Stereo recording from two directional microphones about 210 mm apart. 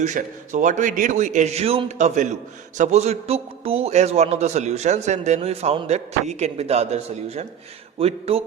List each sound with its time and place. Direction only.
0.0 s a man's voice: 35° right (ahead or behind)